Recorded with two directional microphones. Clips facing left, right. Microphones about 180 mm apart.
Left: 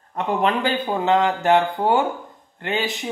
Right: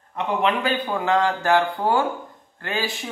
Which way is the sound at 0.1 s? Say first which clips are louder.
Left 1 dB; 40° left (ahead or behind).